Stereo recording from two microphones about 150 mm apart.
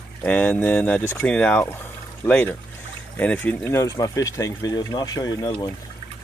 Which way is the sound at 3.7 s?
25° left (ahead or behind).